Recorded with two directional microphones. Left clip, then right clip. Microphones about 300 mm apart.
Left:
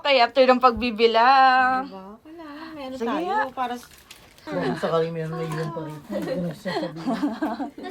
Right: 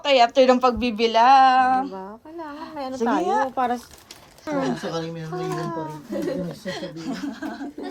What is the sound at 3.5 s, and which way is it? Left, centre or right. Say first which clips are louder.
Speech: right 5 dB; right.